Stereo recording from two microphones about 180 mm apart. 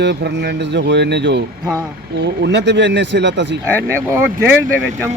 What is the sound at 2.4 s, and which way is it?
Speech, 75° right (ahead or behind).